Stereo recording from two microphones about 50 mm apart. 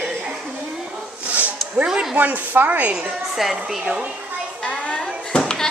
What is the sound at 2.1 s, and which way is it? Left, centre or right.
Speech, right.